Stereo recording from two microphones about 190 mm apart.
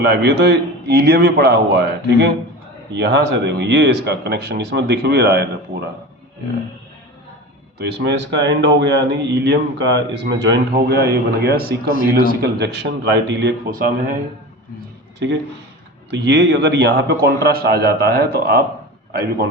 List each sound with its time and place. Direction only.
0.0 s speech: 60° right (ahead or behind)
7.8 s speech: 60° right (ahead or behind)
16.1 s speech: 70° right (ahead or behind)